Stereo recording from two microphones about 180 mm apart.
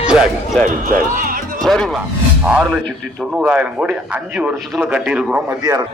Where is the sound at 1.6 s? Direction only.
Centre (ahead or behind).